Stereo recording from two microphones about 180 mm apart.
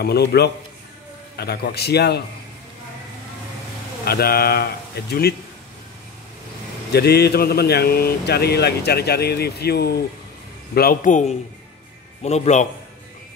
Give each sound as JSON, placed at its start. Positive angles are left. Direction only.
{"t": 0.0, "sound": "speech", "side_deg": 65}
{"t": 4.0, "sound": "speech", "side_deg": 60}
{"t": 6.9, "sound": "a man's voice", "side_deg": 65}